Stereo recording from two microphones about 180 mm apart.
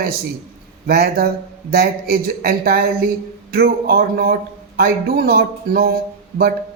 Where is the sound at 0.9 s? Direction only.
55° right (ahead or behind).